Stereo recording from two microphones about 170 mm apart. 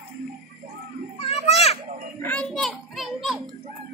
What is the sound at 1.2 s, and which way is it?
Children playing, 35° left (ahead or behind).